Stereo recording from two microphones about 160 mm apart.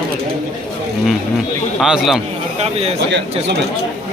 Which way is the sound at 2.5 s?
40° right (ahead or behind).